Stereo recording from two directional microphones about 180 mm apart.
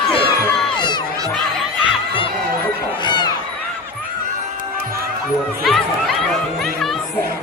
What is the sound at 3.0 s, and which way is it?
Crowd, 25° left (ahead or behind).